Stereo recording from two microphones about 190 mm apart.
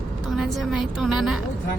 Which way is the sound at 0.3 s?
Centre (ahead or behind).